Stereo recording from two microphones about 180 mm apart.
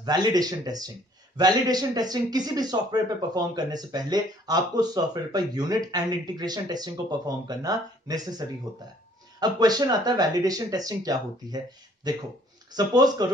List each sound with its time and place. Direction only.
0.0 s a man's voice: 20° right (ahead or behind)